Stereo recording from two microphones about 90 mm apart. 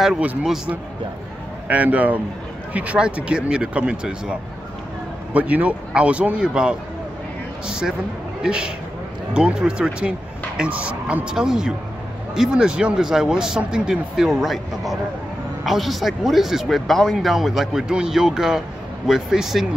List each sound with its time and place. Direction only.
0.2 s speech: 15° right (ahead or behind)
1.7 s speech: 15° right (ahead or behind)